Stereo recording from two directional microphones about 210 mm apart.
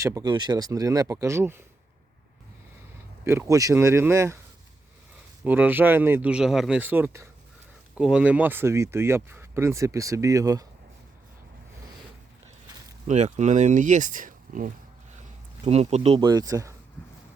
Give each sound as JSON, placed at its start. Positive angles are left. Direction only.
{"t": 0.0, "sound": "speech", "side_deg": -15}
{"t": 3.2, "sound": "speech", "side_deg": -15}
{"t": 5.4, "sound": "speech", "side_deg": -10}
{"t": 13.1, "sound": "speech", "side_deg": -35}